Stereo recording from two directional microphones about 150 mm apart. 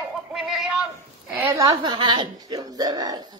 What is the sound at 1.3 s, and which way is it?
Speech, 15° right (ahead or behind).